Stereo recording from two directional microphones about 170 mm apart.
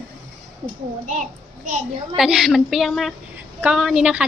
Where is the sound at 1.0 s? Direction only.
45° right (ahead or behind).